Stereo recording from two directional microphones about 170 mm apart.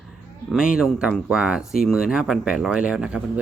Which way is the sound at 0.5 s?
5° right (ahead or behind).